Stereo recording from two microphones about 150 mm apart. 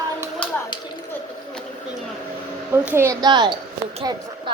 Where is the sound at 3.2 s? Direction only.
30° right (ahead or behind).